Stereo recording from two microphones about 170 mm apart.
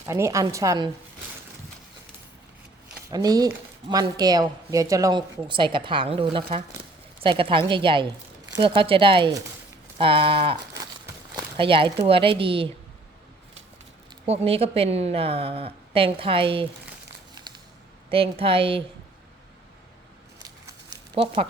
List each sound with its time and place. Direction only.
0.1 s speech: 15° right (ahead or behind)
3.1 s a woman's voice: 25° right (ahead or behind)
14.3 s a woman's voice: 35° right (ahead or behind)
18.1 s a woman's voice: 35° right (ahead or behind)
20.4 s a sound: 25° right (ahead or behind)